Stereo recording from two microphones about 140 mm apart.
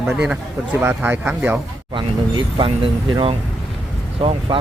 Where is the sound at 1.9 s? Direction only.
35° right (ahead or behind).